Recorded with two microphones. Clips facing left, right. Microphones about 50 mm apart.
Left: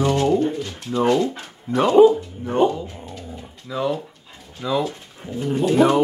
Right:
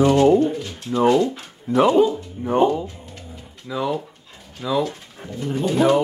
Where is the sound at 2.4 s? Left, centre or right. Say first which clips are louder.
Right 1 dB; centre.